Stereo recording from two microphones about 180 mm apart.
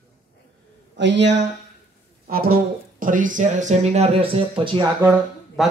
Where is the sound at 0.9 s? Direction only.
75° right (ahead or behind).